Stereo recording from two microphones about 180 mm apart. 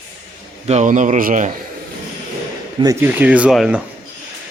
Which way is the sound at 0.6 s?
40° right (ahead or behind).